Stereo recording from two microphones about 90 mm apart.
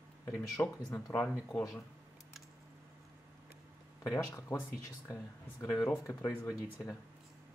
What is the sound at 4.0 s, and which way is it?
Speech, 40° left (ahead or behind).